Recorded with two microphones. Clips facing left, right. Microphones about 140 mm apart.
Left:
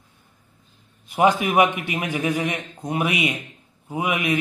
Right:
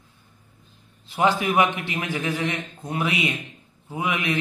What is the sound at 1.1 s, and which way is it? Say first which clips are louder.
Speech: left 3 dB; 20° left (ahead or behind).